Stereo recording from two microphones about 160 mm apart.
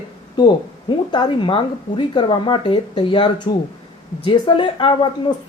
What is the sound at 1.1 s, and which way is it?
Speech, 30° left (ahead or behind).